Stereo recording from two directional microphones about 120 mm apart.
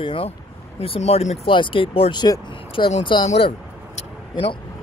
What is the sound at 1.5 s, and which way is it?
Speech, 45° left (ahead or behind).